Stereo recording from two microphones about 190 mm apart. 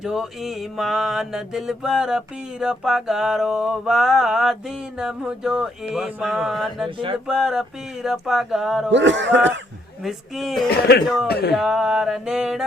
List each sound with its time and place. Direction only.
0.0 s mantra: 5° right (ahead or behind)
6.8 s a sound: 25° right (ahead or behind)
7.3 s mantra: 5° right (ahead or behind)
8.9 s speech: 70° right (ahead or behind)
10.0 s mantra: centre (ahead or behind)
10.7 s speech: 60° left (ahead or behind)
11.5 s mantra: centre (ahead or behind)